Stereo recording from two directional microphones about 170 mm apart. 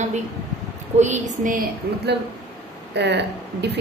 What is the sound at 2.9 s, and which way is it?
Speech, 85° right.